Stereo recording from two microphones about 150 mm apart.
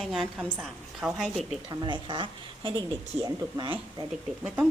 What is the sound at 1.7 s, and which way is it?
A woman's voice, 30° right (ahead or behind).